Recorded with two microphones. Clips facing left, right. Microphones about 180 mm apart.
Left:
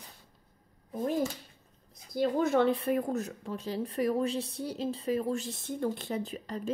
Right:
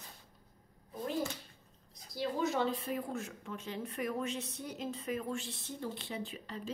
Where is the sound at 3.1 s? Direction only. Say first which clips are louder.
Left 7 dB; 40° left (ahead or behind).